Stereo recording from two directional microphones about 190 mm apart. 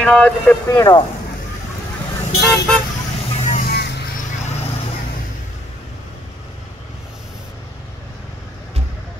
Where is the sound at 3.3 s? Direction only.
40° left (ahead or behind).